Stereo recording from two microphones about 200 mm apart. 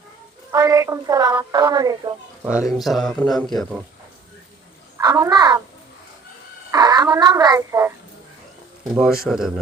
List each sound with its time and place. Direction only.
0.5 s a woman's voice: 15° right (ahead or behind)
2.5 s speech: 5° right (ahead or behind)
4.9 s a woman's voice: 15° right (ahead or behind)
6.7 s speech: 20° right (ahead or behind)
9.2 s speech: centre (ahead or behind)